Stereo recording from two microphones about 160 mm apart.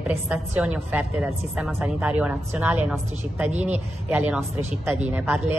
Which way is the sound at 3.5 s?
45° right (ahead or behind).